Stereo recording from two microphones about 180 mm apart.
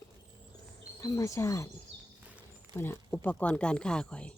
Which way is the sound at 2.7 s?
10° left (ahead or behind).